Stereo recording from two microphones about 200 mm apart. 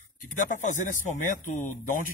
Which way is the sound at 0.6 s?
40° left (ahead or behind).